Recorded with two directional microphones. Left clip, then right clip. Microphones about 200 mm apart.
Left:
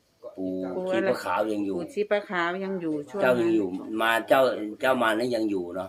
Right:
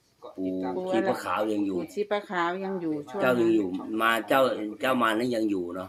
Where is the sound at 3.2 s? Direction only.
5° left (ahead or behind).